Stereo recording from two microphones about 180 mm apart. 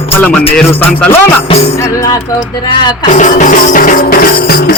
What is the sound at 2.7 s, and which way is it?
Speech, 25° left (ahead or behind).